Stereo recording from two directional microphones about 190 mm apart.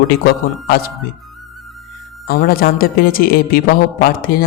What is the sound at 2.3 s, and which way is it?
A man's voice, 50° left (ahead or behind).